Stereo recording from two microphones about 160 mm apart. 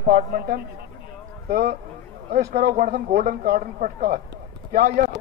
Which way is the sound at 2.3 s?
70° right (ahead or behind).